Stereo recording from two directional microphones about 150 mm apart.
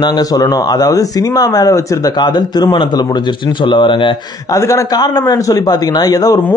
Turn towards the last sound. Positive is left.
turn(degrees=25)  # may be behind; listen again after turning